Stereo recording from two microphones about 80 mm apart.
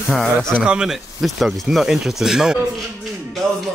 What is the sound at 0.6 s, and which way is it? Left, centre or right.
Speech, centre.